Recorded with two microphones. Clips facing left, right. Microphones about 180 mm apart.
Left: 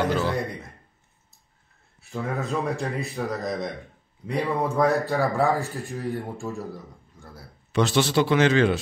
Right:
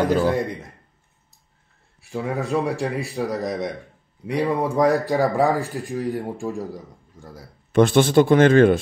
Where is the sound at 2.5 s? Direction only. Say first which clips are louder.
Right 4 dB; 10° right (ahead or behind).